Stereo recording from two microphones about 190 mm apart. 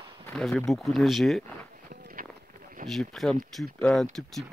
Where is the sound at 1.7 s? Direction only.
45° right (ahead or behind).